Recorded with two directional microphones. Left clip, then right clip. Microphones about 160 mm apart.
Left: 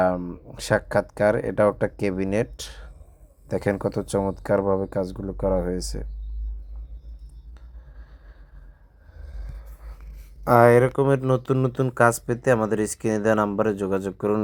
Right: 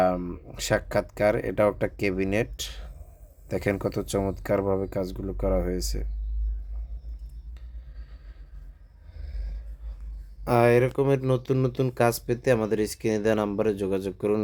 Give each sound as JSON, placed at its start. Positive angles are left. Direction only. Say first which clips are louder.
{"t": 0.0, "sound": "speech", "louder": "left 2 dB", "side_deg": 0}
{"t": 10.4, "sound": "speech", "louder": "left 5 dB", "side_deg": 15}